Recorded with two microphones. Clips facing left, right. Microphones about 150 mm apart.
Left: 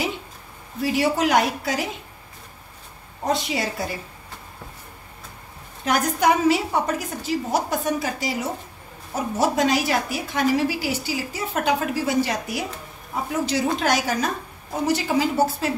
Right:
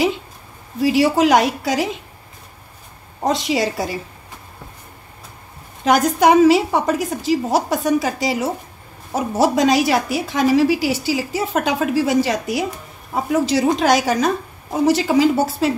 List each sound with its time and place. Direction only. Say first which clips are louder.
0.8 s a woman's voice: right 6 dB; 90° right
3.3 s a woman's voice: right 5 dB; 90° right
5.9 s a woman's voice: right 6 dB; 90° right